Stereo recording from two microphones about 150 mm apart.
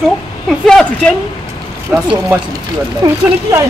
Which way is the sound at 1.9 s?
5° right (ahead or behind).